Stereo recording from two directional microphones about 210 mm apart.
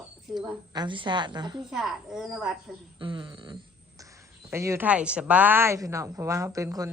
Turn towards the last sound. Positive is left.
turn(degrees=-15)  # may be behind; listen again after turning